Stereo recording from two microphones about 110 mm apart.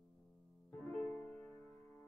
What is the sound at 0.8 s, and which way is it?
Music, 10° left (ahead or behind).